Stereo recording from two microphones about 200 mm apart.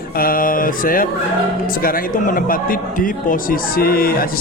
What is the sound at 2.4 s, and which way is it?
A man's voice, 45° left (ahead or behind).